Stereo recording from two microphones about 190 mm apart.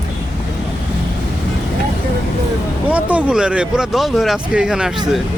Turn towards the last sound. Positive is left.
turn(degrees=-5)  # may be behind; listen again after turning